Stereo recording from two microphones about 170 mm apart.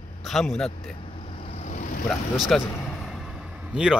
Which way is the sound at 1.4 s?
40° left (ahead or behind).